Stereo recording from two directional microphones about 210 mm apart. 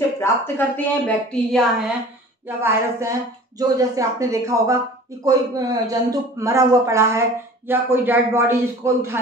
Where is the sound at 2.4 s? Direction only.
10° right (ahead or behind).